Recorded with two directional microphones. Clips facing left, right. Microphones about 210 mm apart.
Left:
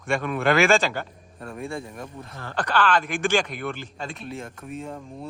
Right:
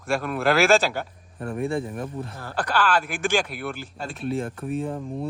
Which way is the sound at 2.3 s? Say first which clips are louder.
Left 2 dB; 5° right (ahead or behind).